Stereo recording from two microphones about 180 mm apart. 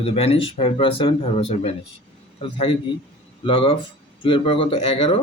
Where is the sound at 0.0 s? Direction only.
35° left (ahead or behind).